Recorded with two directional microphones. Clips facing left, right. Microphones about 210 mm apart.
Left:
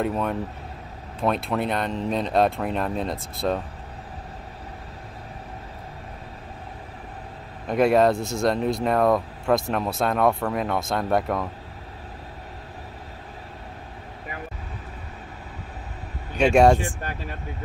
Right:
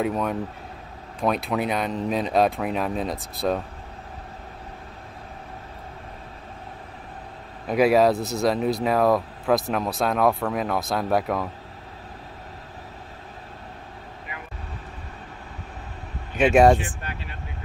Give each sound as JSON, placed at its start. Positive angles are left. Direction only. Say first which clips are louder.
{"t": 0.0, "sound": "speech", "louder": "even", "side_deg": 0}
{"t": 7.6, "sound": "speech", "louder": "even", "side_deg": 0}
{"t": 16.3, "sound": "speech", "louder": "even", "side_deg": 0}
{"t": 17.0, "sound": "speech", "louder": "left 4 dB", "side_deg": 45}